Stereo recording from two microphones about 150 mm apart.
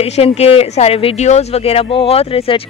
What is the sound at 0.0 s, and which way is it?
A woman's voice, 45° left (ahead or behind).